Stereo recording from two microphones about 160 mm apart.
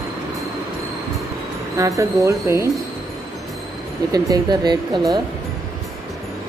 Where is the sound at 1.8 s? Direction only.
20° right (ahead or behind).